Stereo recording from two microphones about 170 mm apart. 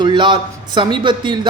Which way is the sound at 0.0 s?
30° right (ahead or behind).